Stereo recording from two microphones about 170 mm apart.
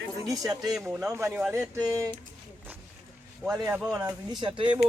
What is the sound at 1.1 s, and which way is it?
Speech, 15° right (ahead or behind).